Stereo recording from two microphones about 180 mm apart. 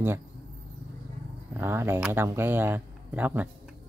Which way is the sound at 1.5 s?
15° right (ahead or behind).